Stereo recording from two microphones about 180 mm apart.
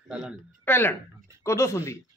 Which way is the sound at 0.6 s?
10° left (ahead or behind).